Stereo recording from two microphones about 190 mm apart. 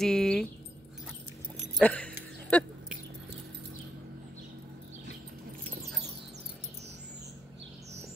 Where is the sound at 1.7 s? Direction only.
5° left (ahead or behind).